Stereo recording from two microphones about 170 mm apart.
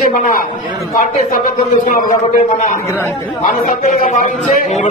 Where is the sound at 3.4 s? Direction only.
50° left (ahead or behind).